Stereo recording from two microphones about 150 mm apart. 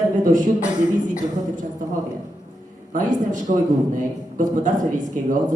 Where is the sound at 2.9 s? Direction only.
60° right (ahead or behind).